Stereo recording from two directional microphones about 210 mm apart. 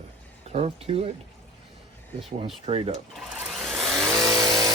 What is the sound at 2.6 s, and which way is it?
Speech, 30° right (ahead or behind).